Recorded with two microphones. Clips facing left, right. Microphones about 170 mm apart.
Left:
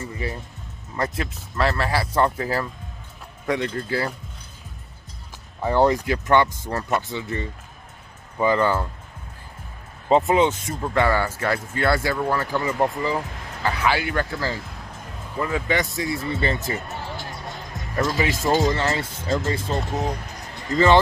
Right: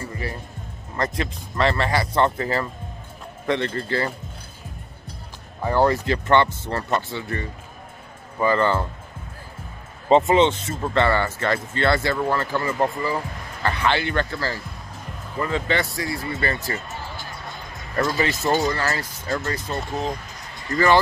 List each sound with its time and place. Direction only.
0.9 s speech: 5° left (ahead or behind)
5.7 s speech: 15° left (ahead or behind)
10.0 s speech: 5° left (ahead or behind)
16.8 s music: 75° left (ahead or behind)
18.2 s speech: 10° left (ahead or behind)
18.7 s speech: 25° left (ahead or behind)